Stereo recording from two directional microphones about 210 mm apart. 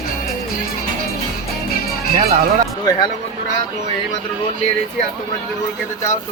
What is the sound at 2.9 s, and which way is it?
Speech, 20° left (ahead or behind).